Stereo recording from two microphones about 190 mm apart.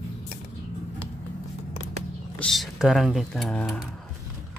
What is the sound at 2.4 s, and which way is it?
Speech, centre (ahead or behind).